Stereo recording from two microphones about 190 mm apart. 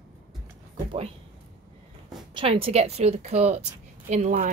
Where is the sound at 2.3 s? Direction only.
30° right (ahead or behind).